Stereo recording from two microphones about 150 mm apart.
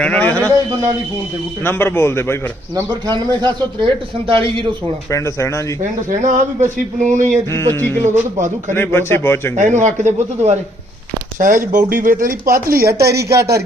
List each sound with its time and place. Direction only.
0.0 s a man's voice: 10° left (ahead or behind)
1.6 s speech: 15° left (ahead or behind)
2.7 s a man's voice: 30° right (ahead or behind)
5.1 s speech: 20° left (ahead or behind)
5.8 s a man's voice: 60° right (ahead or behind)
7.7 s speech: 15° left (ahead or behind)
8.0 s a man's voice: 55° right (ahead or behind)
8.7 s speech: 15° left (ahead or behind)
9.6 s speech: 55° right (ahead or behind)
11.3 s a man's voice: 65° right (ahead or behind); by 12.8 s 80° right
12.8 s a man's voice: 20° right (ahead or behind)